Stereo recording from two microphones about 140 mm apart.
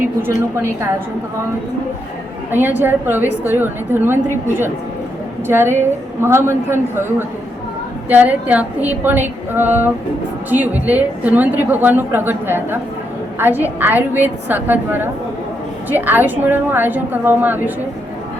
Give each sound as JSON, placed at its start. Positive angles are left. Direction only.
{"t": 0.3, "sound": "a woman's voice", "side_deg": -20}
{"t": 2.5, "sound": "a woman's voice", "side_deg": -15}